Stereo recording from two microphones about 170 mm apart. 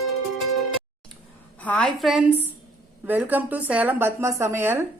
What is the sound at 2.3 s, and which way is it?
Speech, 10° left (ahead or behind).